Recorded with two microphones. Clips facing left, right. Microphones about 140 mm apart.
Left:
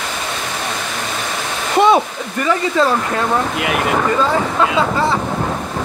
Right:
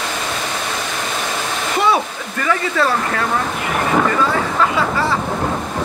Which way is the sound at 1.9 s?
20° left (ahead or behind).